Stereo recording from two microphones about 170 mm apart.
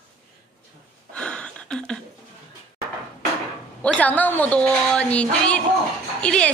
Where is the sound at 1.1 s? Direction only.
5° left (ahead or behind).